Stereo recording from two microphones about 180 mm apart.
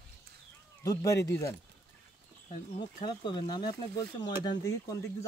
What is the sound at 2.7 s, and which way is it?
Speech, 25° left (ahead or behind).